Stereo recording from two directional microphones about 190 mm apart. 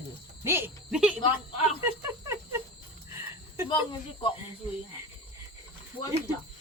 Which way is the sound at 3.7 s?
25° left (ahead or behind).